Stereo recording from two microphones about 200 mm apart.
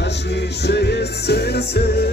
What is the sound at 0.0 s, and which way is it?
Music, 60° left (ahead or behind).